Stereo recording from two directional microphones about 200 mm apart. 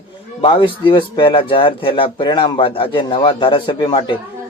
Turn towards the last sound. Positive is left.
turn(degrees=25)  # may be behind; listen again after turning